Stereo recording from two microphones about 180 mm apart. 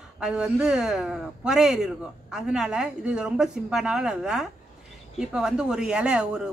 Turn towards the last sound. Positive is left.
turn(degrees=-5)  # may be behind; listen again after turning